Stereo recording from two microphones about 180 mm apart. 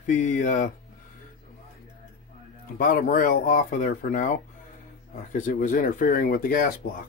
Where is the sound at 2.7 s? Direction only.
50° left (ahead or behind).